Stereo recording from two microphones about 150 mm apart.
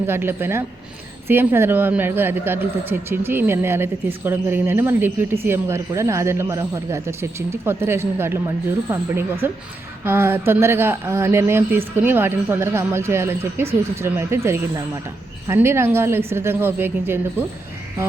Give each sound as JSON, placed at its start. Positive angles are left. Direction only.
{"t": 0.1, "sound": "speech", "side_deg": -15}